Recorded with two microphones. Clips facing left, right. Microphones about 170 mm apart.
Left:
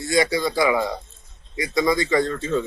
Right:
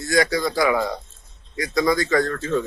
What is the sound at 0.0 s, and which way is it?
Speech, 25° left (ahead or behind).